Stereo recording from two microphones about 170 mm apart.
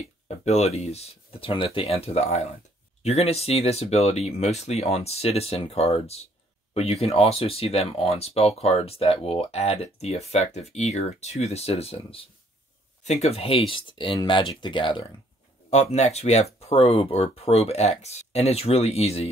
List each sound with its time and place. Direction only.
0.5 s speech: 40° left (ahead or behind)
15.7 s speech: 40° left (ahead or behind)